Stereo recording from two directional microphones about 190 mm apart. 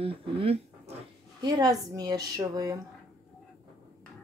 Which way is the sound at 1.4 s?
20° right (ahead or behind).